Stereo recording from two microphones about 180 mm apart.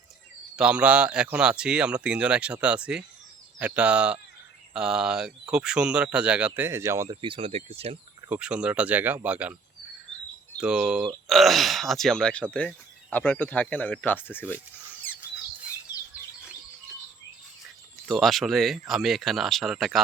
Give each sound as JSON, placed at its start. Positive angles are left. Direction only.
{"t": 0.5, "sound": "speech", "side_deg": -5}
{"t": 7.2, "sound": "speech", "side_deg": -30}
{"t": 8.3, "sound": "speech", "side_deg": -5}
{"t": 10.6, "sound": "speech", "side_deg": -5}
{"t": 18.1, "sound": "speech", "side_deg": 0}